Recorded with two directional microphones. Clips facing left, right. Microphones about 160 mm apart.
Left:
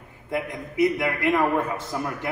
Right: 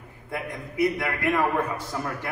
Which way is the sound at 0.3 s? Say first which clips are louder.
Left 4 dB; 20° left (ahead or behind).